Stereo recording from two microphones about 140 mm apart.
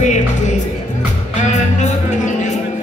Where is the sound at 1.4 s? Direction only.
60° left (ahead or behind).